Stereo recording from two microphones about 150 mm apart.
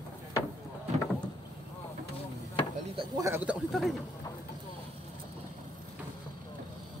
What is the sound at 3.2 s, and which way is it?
Speech, 10° right (ahead or behind).